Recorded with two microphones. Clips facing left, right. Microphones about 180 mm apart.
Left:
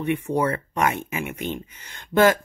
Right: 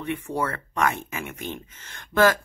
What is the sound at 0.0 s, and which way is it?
Speech, 20° left (ahead or behind).